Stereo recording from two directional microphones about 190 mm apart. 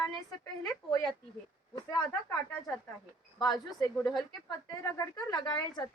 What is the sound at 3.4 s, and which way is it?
Speech, 20° left (ahead or behind).